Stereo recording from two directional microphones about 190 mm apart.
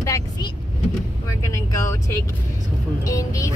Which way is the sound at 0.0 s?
20° left (ahead or behind).